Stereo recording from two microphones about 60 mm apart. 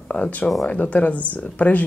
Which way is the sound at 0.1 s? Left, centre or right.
Left.